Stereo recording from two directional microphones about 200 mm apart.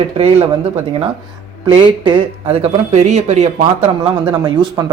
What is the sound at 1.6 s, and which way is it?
Speech, 25° right (ahead or behind).